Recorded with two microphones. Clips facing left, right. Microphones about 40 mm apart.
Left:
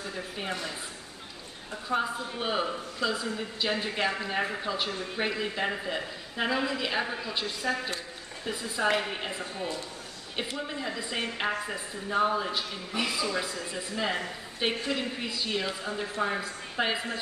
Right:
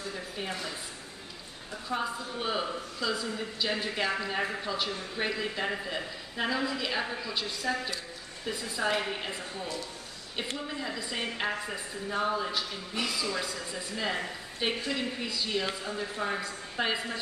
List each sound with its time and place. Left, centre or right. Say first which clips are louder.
1.9 s speech: left 3 dB; centre
8.9 s speech: left 2 dB; centre
10.8 s speech: left 3 dB; centre
15.9 s speech: left 3 dB; left
16.3 s speech: left 1 dB; centre